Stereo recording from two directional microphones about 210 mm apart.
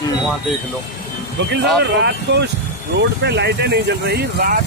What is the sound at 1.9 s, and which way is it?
Speech, 55° right (ahead or behind).